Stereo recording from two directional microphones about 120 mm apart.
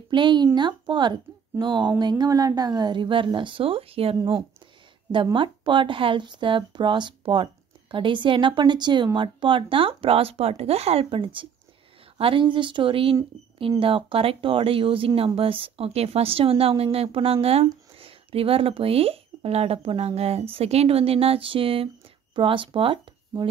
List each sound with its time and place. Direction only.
0.1 s speech: 40° right (ahead or behind)